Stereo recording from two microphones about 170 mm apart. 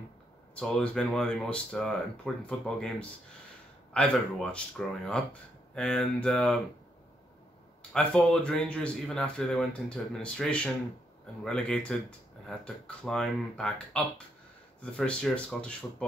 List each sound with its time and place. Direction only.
0.6 s speech: 5° left (ahead or behind)
3.9 s speech: 5° left (ahead or behind)
7.9 s speech: 5° left (ahead or behind)